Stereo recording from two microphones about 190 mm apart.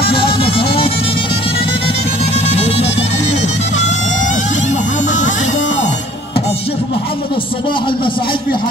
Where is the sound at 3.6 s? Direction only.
40° left (ahead or behind).